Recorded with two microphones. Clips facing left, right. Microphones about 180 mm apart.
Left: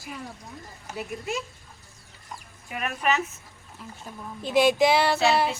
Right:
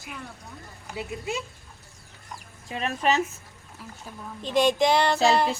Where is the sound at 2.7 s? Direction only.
25° right (ahead or behind).